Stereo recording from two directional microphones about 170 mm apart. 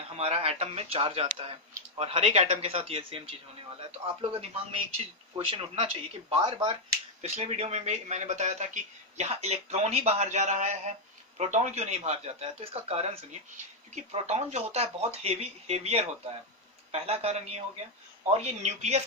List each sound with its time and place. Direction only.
0.2 s speech: 35° right (ahead or behind)